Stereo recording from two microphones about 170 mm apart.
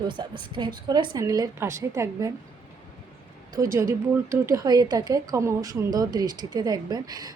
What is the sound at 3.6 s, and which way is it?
Speech, 15° right (ahead or behind).